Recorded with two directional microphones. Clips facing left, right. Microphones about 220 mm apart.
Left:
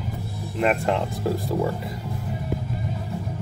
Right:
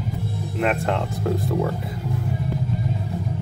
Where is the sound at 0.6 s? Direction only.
Centre (ahead or behind).